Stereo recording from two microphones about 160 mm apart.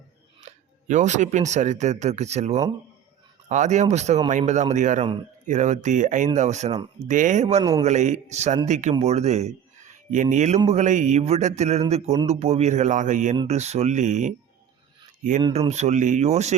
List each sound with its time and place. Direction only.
0.4 s speech: 50° right (ahead or behind)
7.6 s a man's voice: 25° right (ahead or behind)
7.9 s speech: 45° right (ahead or behind)
15.7 s speech: 45° right (ahead or behind)